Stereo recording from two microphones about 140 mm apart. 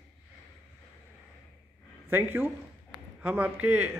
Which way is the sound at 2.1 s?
15° right (ahead or behind).